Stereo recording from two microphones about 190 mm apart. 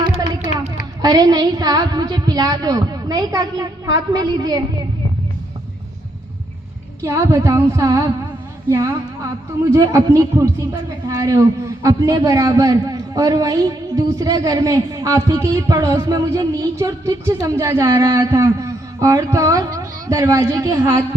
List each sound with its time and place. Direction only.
0.5 s a sound: 35° left (ahead or behind)
1.0 s a woman's voice: 20° right (ahead or behind)
7.0 s a man's voice: 15° right (ahead or behind)